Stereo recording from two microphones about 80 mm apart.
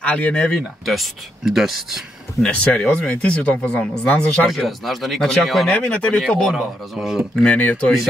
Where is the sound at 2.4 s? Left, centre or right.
Centre.